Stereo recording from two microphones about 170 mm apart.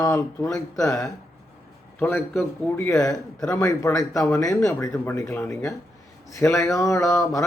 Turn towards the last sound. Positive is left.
turn(degrees=15)  # may be behind; listen again after turning